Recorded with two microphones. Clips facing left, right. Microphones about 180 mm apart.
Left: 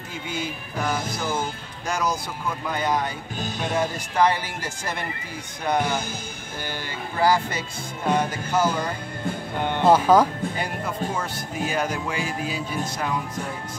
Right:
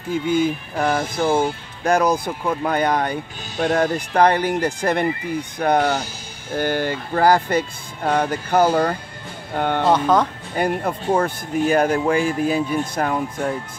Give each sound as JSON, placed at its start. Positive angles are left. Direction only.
{"t": 0.1, "sound": "speech", "side_deg": -50}
{"t": 9.8, "sound": "speech", "side_deg": 5}
{"t": 10.5, "sound": "speech", "side_deg": -55}